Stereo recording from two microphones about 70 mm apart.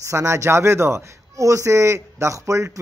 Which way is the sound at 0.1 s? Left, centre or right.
Right.